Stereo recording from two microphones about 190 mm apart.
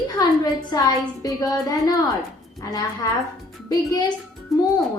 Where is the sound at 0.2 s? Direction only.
20° left (ahead or behind).